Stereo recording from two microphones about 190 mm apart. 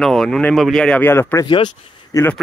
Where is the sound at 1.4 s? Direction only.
25° left (ahead or behind).